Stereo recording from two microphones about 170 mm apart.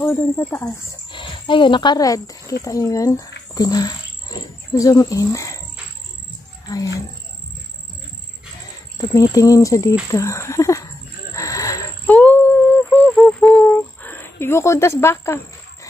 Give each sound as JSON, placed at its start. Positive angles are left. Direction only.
{"t": 0.0, "sound": "speech", "side_deg": 10}
{"t": 1.1, "sound": "speech", "side_deg": 30}
{"t": 8.9, "sound": "speech", "side_deg": 20}
{"t": 11.3, "sound": "wild animals", "side_deg": 20}
{"t": 12.1, "sound": "a sound", "side_deg": 10}